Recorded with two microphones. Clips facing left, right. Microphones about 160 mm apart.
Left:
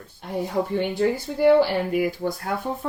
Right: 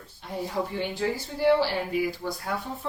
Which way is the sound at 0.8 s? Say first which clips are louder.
Left 6 dB; 55° left (ahead or behind).